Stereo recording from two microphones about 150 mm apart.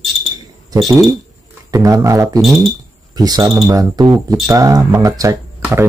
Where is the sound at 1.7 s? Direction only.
20° right (ahead or behind).